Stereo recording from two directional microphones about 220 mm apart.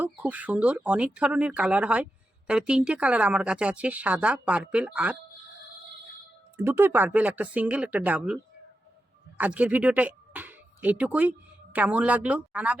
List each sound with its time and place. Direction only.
0.0 s a woman's voice: 10° right (ahead or behind)
6.6 s speech: 10° right (ahead or behind)
9.4 s speech: 5° right (ahead or behind)